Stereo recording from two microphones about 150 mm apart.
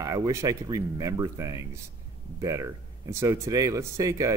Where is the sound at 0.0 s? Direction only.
20° right (ahead or behind).